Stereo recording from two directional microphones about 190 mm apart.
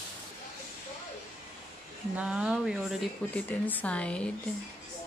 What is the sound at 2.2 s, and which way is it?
Speech, 5° right (ahead or behind).